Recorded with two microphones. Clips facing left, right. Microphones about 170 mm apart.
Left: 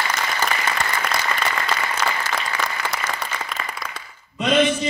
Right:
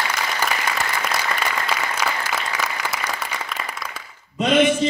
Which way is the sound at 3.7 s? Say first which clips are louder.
Even; 10° right (ahead or behind).